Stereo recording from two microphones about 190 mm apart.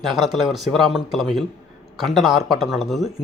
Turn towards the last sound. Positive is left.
turn(degrees=0)  # may be behind; listen again after turning